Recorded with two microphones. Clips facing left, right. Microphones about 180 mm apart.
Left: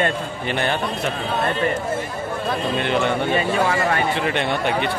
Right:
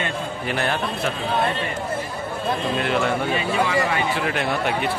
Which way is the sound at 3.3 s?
45° left (ahead or behind).